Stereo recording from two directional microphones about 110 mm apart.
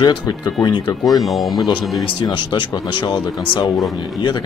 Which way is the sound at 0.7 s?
40° left (ahead or behind).